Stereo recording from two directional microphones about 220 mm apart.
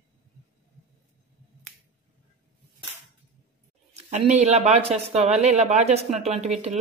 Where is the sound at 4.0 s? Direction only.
30° right (ahead or behind).